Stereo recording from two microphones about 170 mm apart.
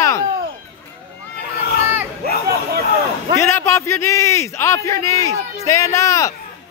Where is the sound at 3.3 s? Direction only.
15° left (ahead or behind).